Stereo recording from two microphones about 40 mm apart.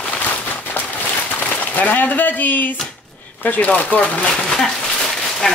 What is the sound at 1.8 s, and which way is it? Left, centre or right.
Speech, left.